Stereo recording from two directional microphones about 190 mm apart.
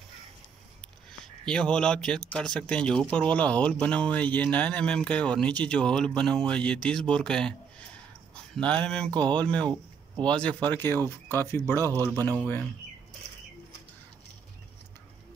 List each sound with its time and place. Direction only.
1.4 s speech: 5° left (ahead or behind)
8.5 s speech: 5° left (ahead or behind)
9.7 s a sound: 25° right (ahead or behind)
10.3 s speech: 5° left (ahead or behind)
11.8 s speech: 15° right (ahead or behind)